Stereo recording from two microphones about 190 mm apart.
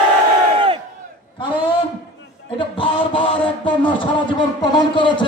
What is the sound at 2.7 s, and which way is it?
A man's voice, 25° left (ahead or behind).